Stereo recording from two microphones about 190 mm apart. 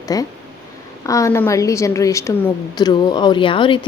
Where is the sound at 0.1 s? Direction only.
20° left (ahead or behind).